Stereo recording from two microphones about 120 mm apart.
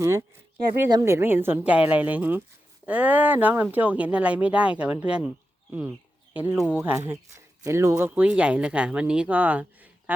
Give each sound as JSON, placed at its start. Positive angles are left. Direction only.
{"t": 0.0, "sound": "speech", "side_deg": -25}
{"t": 6.3, "sound": "speech", "side_deg": -15}